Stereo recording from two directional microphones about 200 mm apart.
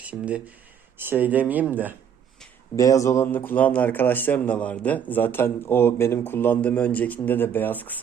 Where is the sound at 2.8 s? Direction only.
15° left (ahead or behind).